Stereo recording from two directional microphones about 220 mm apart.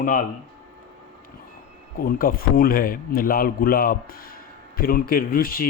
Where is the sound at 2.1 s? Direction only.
40° left (ahead or behind).